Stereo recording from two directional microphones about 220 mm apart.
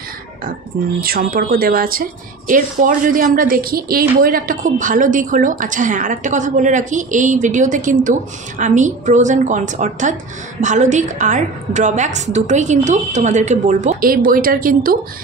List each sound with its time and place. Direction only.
1.0 s a woman's voice: 40° right (ahead or behind)